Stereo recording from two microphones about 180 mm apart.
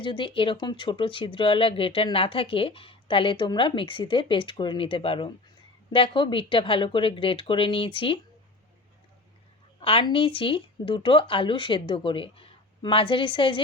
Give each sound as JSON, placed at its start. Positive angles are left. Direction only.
{"t": 0.0, "sound": "speech", "side_deg": 25}
{"t": 9.8, "sound": "speech", "side_deg": 30}